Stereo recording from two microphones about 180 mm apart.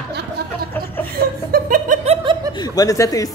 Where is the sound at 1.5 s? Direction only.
50° right (ahead or behind).